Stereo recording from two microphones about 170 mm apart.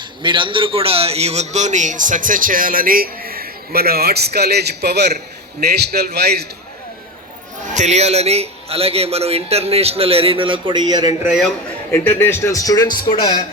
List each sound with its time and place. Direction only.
0.2 s a man's voice: 30° right (ahead or behind); by 6.5 s 70° right (ahead or behind)
7.6 s a man's voice: 45° right (ahead or behind); by 11.3 s 25° right (ahead or behind)
11.3 s a man's voice: centre (ahead or behind)
11.9 s a man's voice: 15° left (ahead or behind)